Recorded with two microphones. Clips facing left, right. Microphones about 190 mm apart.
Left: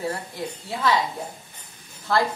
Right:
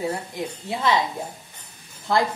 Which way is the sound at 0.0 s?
15° right (ahead or behind).